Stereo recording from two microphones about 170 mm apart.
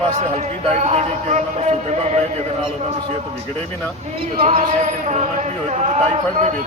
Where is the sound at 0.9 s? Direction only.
40° right (ahead or behind).